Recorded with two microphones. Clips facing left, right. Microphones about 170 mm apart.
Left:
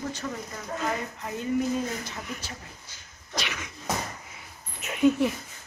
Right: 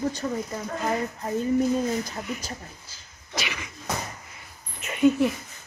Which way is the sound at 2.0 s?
35° right (ahead or behind).